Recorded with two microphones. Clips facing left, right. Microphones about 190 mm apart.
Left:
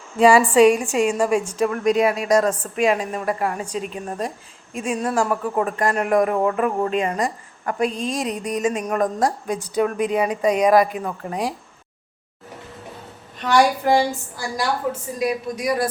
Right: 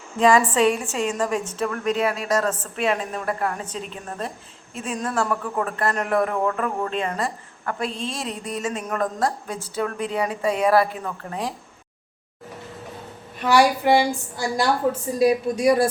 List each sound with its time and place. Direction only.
0.2 s speech: 10° left (ahead or behind)
13.4 s speech: 5° right (ahead or behind)
15.2 s a woman's voice: 30° right (ahead or behind)